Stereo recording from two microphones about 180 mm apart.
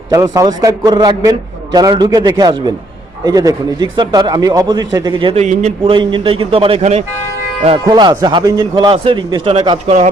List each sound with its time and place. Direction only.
0.1 s a man's voice: 20° right (ahead or behind)